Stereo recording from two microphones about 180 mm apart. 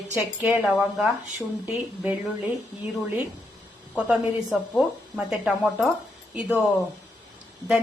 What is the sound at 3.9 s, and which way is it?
A woman's voice, 5° right (ahead or behind).